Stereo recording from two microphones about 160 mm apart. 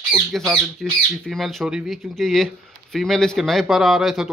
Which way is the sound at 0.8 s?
Centre (ahead or behind).